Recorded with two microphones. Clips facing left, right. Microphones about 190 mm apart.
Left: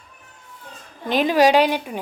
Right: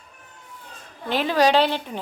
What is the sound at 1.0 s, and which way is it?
Speech, 15° left (ahead or behind).